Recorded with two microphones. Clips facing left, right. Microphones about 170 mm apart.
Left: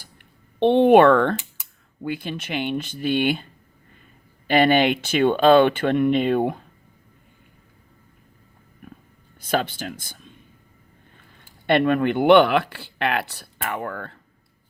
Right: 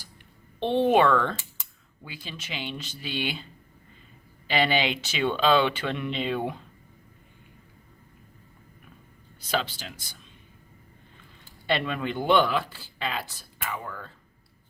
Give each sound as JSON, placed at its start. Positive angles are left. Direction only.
{"t": 0.6, "sound": "speech", "side_deg": 60}
{"t": 4.4, "sound": "speech", "side_deg": 55}
{"t": 8.8, "sound": "music", "side_deg": 50}
{"t": 9.4, "sound": "speech", "side_deg": 55}
{"t": 11.6, "sound": "speech", "side_deg": 55}